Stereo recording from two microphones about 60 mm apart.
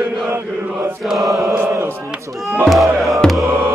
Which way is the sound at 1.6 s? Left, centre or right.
Right.